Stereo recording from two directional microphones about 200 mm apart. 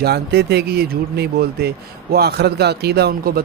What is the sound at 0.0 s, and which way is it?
Speech, 55° right (ahead or behind).